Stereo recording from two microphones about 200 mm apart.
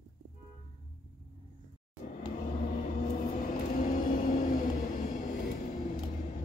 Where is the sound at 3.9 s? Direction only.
40° left (ahead or behind).